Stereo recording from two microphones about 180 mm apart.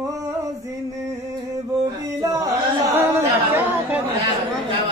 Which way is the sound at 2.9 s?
10° right (ahead or behind).